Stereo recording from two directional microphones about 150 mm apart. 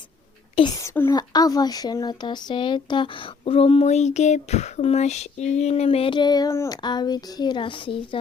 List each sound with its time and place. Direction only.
0.5 s speech: 30° left (ahead or behind)
0.8 s a child's voice: 20° left (ahead or behind); by 8.2 s 35° left (ahead or behind)